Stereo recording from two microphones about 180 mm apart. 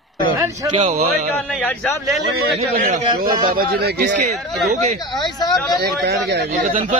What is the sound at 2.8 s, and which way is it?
Speech, 50° right (ahead or behind).